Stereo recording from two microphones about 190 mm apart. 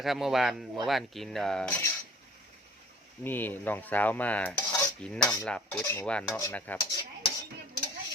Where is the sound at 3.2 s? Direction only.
10° left (ahead or behind).